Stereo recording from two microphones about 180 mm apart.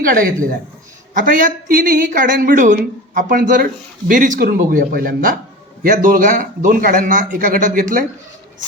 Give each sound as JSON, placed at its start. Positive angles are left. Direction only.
{"t": 0.0, "sound": "speech", "side_deg": -50}